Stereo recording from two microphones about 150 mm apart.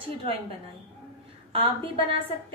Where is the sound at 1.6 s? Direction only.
35° right (ahead or behind).